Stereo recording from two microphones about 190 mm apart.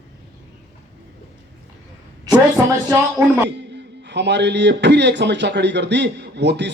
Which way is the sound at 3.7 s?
65° right (ahead or behind).